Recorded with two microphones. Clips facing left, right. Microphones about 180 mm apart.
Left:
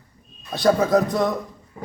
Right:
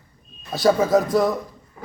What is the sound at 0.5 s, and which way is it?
Speech, centre (ahead or behind).